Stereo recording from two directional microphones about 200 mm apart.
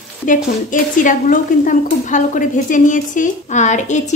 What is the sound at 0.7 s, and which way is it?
A woman's voice, 40° left (ahead or behind).